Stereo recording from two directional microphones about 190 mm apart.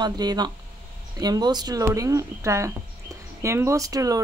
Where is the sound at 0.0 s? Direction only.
20° right (ahead or behind).